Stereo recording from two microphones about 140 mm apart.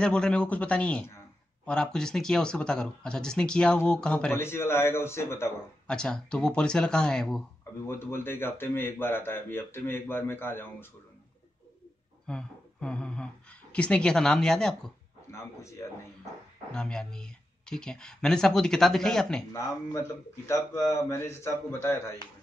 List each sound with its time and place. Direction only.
0.0 s a man's voice: 5° left (ahead or behind)
4.4 s a man's voice: 15° left (ahead or behind)
5.9 s speech: 5° left (ahead or behind)
7.9 s a man's voice: 15° left (ahead or behind)
12.3 s a woman's voice: 5° left (ahead or behind)
15.3 s a man's voice: 20° left (ahead or behind)
16.7 s speech: 5° left (ahead or behind)
19.5 s a man's voice: 20° left (ahead or behind)